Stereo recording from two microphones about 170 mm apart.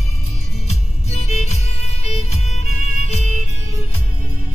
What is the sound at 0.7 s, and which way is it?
Music, 40° left (ahead or behind).